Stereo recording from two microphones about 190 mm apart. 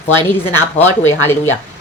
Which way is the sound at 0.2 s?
10° left (ahead or behind).